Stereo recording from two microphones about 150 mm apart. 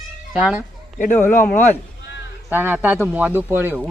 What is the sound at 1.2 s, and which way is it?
Speech, 15° left (ahead or behind).